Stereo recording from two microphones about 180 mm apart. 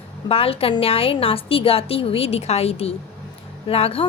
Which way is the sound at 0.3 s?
30° left (ahead or behind).